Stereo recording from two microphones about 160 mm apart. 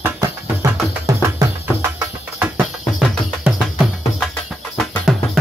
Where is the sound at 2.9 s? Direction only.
5° right (ahead or behind).